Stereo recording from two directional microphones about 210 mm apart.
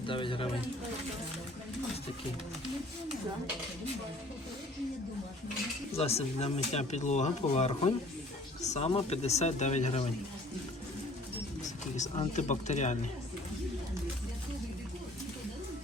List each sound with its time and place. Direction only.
0.0 s speech: 25° left (ahead or behind)
5.9 s speech: 30° left (ahead or behind)
11.6 s speech: 35° left (ahead or behind)